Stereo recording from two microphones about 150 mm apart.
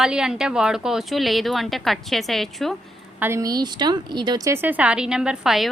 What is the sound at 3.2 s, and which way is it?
A woman's voice, 15° right (ahead or behind).